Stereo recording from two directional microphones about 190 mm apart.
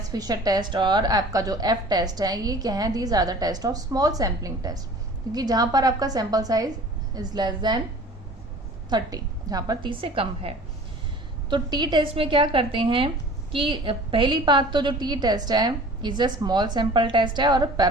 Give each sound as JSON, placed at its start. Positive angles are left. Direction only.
{"t": 0.1, "sound": "a woman's voice", "side_deg": -20}
{"t": 8.9, "sound": "a woman's voice", "side_deg": -20}